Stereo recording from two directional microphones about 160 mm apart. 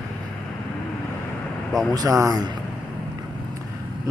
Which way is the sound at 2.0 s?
20° right (ahead or behind).